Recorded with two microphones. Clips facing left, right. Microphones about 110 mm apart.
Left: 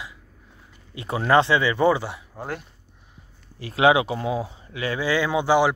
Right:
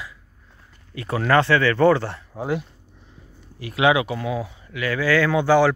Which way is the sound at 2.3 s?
5° right (ahead or behind).